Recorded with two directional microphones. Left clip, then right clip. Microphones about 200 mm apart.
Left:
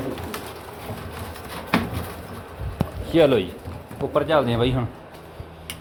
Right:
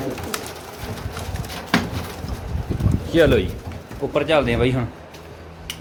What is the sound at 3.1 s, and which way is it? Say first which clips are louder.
Speech: right 1 dB; centre (ahead or behind).